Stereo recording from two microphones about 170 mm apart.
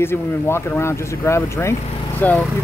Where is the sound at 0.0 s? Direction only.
15° left (ahead or behind).